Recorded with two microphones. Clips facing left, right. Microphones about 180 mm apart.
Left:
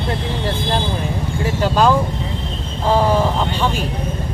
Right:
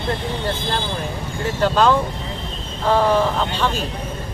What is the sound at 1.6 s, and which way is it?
Speech, 10° left (ahead or behind).